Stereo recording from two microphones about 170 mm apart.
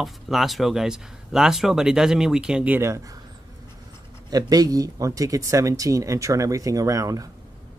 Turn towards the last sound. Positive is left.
turn(degrees=-20)  # may be behind; listen again after turning